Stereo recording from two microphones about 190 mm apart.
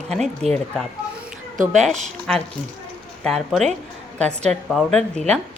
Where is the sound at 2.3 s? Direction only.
5° left (ahead or behind).